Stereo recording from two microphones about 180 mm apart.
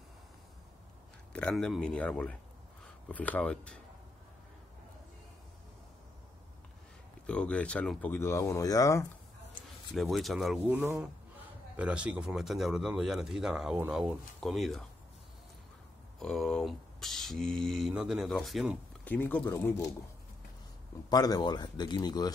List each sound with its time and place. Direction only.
1.3 s speech: 5° left (ahead or behind)
7.2 s speech: 5° left (ahead or behind)
9.9 s speech: centre (ahead or behind)
16.2 s speech: centre (ahead or behind)
21.1 s speech: 20° left (ahead or behind)